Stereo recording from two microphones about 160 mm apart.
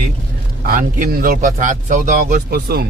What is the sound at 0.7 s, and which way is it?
Speech, 55° right (ahead or behind).